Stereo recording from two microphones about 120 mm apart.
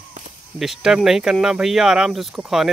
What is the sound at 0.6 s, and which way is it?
Speech, 5° right (ahead or behind).